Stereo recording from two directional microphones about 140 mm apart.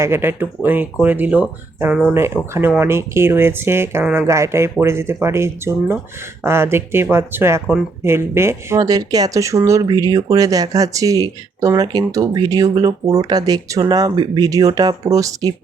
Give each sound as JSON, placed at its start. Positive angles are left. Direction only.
{"t": 0.0, "sound": "speech", "side_deg": -15}